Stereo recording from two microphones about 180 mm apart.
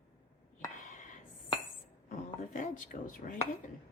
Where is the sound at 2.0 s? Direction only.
45° left (ahead or behind).